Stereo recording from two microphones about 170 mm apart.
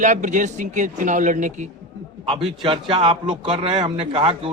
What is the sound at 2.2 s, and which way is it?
A man's voice, 30° right (ahead or behind).